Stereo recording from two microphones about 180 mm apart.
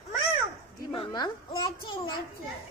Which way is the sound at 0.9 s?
25° left (ahead or behind).